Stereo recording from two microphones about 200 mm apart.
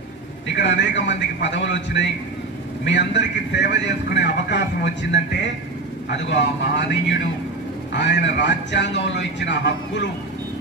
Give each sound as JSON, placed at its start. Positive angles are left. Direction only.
{"t": 0.6, "sound": "a man's voice", "side_deg": 65}